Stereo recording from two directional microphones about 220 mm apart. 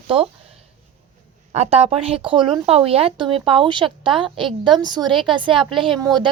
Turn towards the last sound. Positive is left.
turn(degrees=-20)  # may be behind; listen again after turning